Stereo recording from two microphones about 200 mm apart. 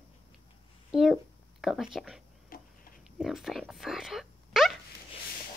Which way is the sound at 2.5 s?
45° left (ahead or behind).